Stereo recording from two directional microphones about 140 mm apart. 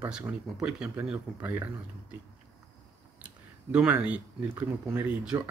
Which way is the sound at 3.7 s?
10° right (ahead or behind).